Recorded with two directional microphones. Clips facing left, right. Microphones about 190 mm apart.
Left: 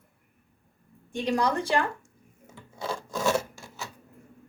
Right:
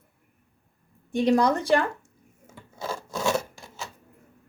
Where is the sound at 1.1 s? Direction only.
15° right (ahead or behind).